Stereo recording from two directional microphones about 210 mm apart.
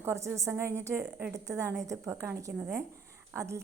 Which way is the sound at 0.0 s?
10° right (ahead or behind).